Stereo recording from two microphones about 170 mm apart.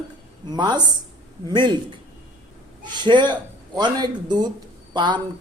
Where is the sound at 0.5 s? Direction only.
25° right (ahead or behind).